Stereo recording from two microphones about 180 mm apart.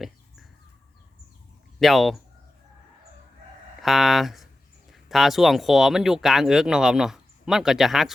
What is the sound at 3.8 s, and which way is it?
Speech, centre (ahead or behind).